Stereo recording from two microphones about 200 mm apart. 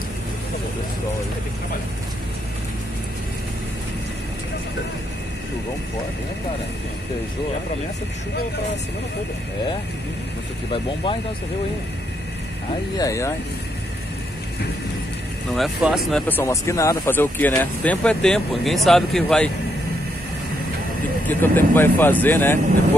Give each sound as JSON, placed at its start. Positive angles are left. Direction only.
{"t": 12.9, "sound": "speech", "side_deg": 15}
{"t": 15.5, "sound": "speech", "side_deg": 0}
{"t": 21.3, "sound": "speech", "side_deg": 10}